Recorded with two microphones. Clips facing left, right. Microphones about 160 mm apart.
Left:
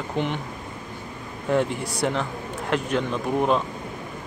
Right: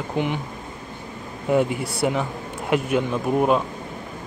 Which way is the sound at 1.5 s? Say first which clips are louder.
Right 2 dB; 5° right (ahead or behind).